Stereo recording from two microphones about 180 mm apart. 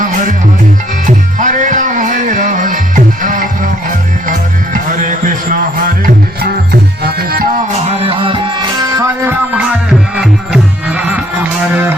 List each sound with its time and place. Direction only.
1.0 s music: 45° right (ahead or behind)
7.0 s music: 55° right (ahead or behind)
7.9 s music: 35° right (ahead or behind)
10.2 s music: 5° right (ahead or behind)